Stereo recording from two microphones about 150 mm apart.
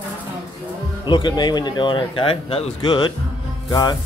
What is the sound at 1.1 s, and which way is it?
A man's voice, 30° left (ahead or behind).